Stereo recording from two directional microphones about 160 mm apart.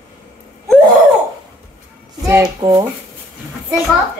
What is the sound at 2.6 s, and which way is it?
Speech, 30° right (ahead or behind).